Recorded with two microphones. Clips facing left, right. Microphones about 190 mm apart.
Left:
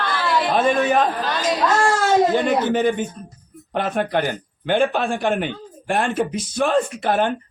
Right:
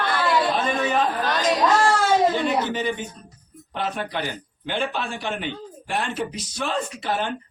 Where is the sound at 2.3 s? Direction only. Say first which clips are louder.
Left 5 dB; 50° left (ahead or behind).